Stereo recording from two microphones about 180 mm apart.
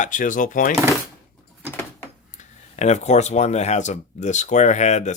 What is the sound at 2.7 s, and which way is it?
Speech, 40° left (ahead or behind).